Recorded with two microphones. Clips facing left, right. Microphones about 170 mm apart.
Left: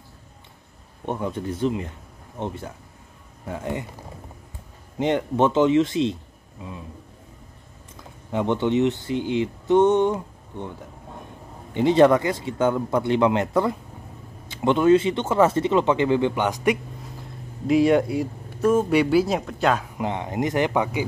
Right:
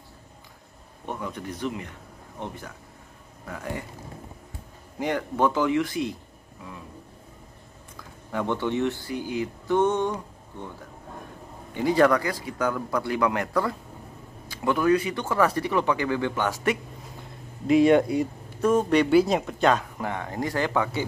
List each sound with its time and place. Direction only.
1.0 s speech: 30° left (ahead or behind)
4.9 s speech: 25° left (ahead or behind)
8.3 s speech: 20° left (ahead or behind)
11.7 s speech: 25° left (ahead or behind)
17.6 s speech: 5° left (ahead or behind)
20.0 s speech: 20° left (ahead or behind)